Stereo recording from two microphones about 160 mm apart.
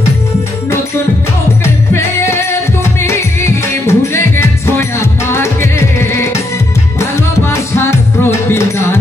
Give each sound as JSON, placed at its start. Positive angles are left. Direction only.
{"t": 1.6, "sound": "music", "side_deg": 15}